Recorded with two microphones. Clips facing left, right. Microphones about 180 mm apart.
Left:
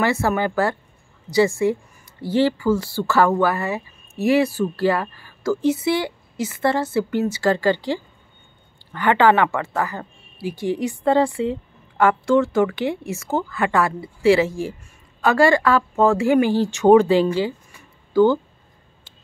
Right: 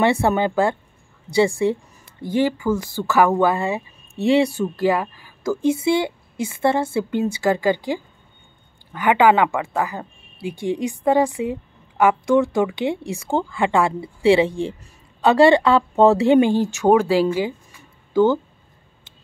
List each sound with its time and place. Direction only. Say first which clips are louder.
0.0 s speech: right 2 dB; 20° right (ahead or behind)
2.3 s a woman's voice: left 1 dB; 15° right (ahead or behind)
16.6 s speech: left 3 dB; 5° right (ahead or behind); by 18.4 s 20° right (ahead or behind)